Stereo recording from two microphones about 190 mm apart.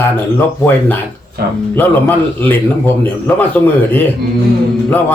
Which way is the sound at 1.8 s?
10° left (ahead or behind).